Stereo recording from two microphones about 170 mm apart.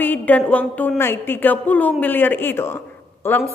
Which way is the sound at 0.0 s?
10° left (ahead or behind).